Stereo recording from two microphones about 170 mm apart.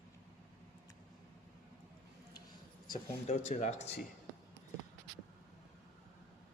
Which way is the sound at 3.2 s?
45° left (ahead or behind).